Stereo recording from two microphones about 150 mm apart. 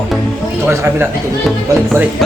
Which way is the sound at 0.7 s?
15° right (ahead or behind).